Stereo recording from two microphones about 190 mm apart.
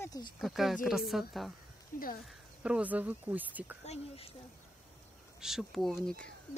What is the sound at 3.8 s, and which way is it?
Speech, 30° left (ahead or behind).